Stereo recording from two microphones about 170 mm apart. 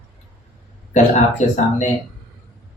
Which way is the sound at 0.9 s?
45° left (ahead or behind).